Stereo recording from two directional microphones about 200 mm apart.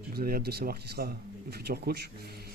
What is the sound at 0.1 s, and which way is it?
Speech, 50° right (ahead or behind).